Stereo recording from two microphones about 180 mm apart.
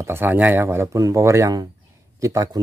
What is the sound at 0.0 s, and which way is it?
Speech, 10° right (ahead or behind).